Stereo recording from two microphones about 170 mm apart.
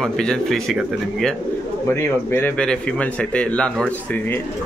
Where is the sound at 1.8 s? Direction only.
15° left (ahead or behind).